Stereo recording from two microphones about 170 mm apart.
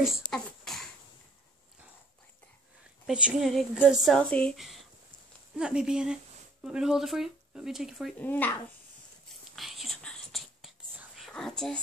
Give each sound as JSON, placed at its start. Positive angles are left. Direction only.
{"t": 0.0, "sound": "a sound", "side_deg": 0}
{"t": 3.1, "sound": "a woman's voice", "side_deg": -5}
{"t": 8.2, "sound": "speech", "side_deg": 10}
{"t": 9.6, "sound": "whispering", "side_deg": 0}